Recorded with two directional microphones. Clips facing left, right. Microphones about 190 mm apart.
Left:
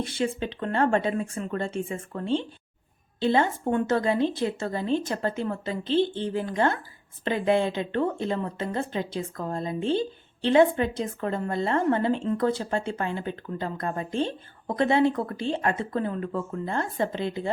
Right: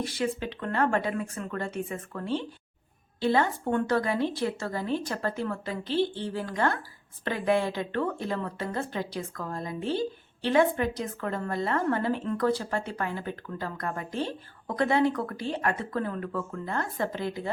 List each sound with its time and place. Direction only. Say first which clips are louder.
0.0 s a woman's voice: left 2 dB; 25° left (ahead or behind)